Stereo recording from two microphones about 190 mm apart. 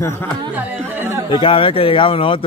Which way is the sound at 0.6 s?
10° right (ahead or behind).